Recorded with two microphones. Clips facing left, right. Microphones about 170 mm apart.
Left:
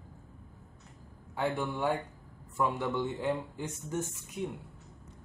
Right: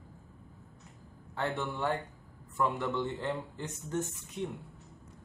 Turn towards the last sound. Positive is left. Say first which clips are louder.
# left 1 dB
turn(degrees=10)  # may be behind; listen again after turning